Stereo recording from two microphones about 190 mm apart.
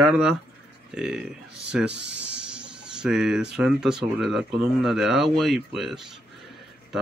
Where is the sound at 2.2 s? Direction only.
5° right (ahead or behind).